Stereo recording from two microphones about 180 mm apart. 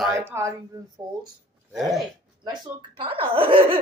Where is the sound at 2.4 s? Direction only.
25° right (ahead or behind).